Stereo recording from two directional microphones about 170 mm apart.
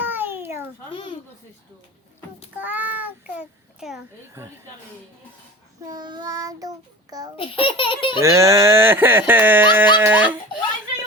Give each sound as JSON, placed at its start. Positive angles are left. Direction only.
{"t": 0.0, "sound": "a sound", "side_deg": -10}
{"t": 0.9, "sound": "speech", "side_deg": 30}
{"t": 2.6, "sound": "a child's voice", "side_deg": -10}
{"t": 5.8, "sound": "child singing", "side_deg": -25}
{"t": 7.3, "sound": "speech", "side_deg": 30}
{"t": 8.2, "sound": "speech", "side_deg": -15}